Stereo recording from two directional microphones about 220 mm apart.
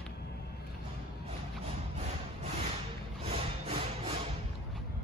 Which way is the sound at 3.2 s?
25° right (ahead or behind).